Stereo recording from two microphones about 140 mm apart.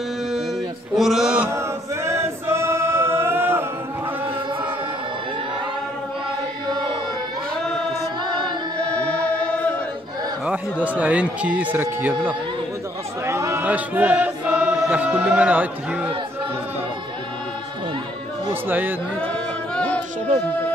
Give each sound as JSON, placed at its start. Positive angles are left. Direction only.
{"t": 0.9, "sound": "a sound", "side_deg": 0}
{"t": 2.0, "sound": "choir", "side_deg": -20}
{"t": 9.4, "sound": "choir", "side_deg": 10}
{"t": 10.4, "sound": "a sound", "side_deg": -10}
{"t": 13.3, "sound": "chant", "side_deg": -20}
{"t": 18.5, "sound": "speech", "side_deg": -15}
{"t": 19.7, "sound": "music", "side_deg": 10}
{"t": 20.4, "sound": "speech", "side_deg": 10}